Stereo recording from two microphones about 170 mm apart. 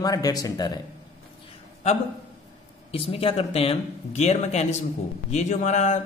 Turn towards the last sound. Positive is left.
turn(degrees=45)  # may be behind; listen again after turning